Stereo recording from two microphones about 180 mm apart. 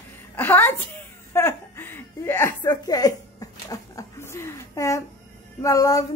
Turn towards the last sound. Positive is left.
turn(degrees=20)  # may be behind; listen again after turning